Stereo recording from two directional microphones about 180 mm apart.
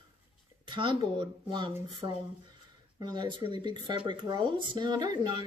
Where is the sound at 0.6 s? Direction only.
25° right (ahead or behind).